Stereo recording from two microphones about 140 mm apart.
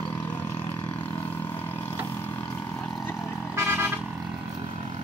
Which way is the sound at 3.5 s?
15° right (ahead or behind).